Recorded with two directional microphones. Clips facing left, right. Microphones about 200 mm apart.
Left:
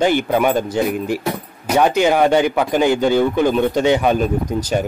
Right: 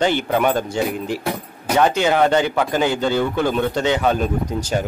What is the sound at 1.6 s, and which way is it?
Speech, 10° left (ahead or behind).